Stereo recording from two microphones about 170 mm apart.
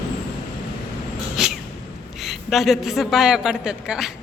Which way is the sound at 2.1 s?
Centre (ahead or behind).